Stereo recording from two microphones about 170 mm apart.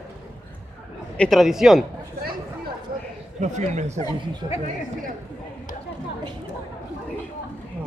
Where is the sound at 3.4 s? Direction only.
45° right (ahead or behind).